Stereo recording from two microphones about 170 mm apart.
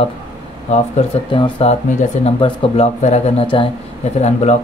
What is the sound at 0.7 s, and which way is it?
Speech, 35° left (ahead or behind).